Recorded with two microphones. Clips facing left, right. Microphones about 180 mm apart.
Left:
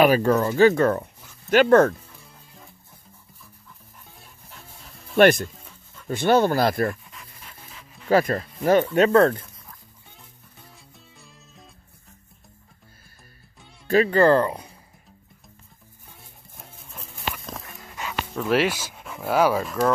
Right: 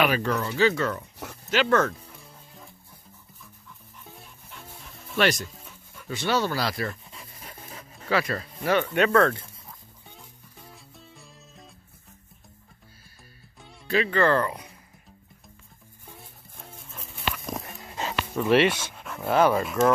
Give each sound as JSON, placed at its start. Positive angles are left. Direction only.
{"t": 0.0, "sound": "speech", "side_deg": 40}
{"t": 2.1, "sound": "music", "side_deg": 0}
{"t": 5.1, "sound": "speech", "side_deg": 55}
{"t": 5.5, "sound": "dog", "side_deg": 0}
{"t": 6.0, "sound": "speech", "side_deg": 50}
{"t": 7.1, "sound": "pant", "side_deg": -35}
{"t": 8.1, "sound": "speech", "side_deg": 45}
{"t": 10.7, "sound": "music", "side_deg": 0}
{"t": 13.8, "sound": "speech", "side_deg": 40}
{"t": 16.5, "sound": "music", "side_deg": 0}
{"t": 17.5, "sound": "a sound", "side_deg": -25}
{"t": 18.3, "sound": "speech", "side_deg": 0}